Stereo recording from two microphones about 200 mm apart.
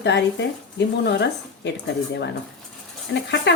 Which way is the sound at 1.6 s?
60° left (ahead or behind).